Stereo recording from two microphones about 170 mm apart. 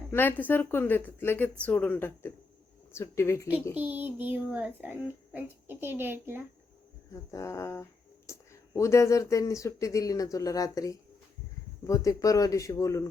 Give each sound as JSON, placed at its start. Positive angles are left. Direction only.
{"t": 0.1, "sound": "speech", "side_deg": 10}
{"t": 3.8, "sound": "a child's voice", "side_deg": -10}
{"t": 7.1, "sound": "speech", "side_deg": 15}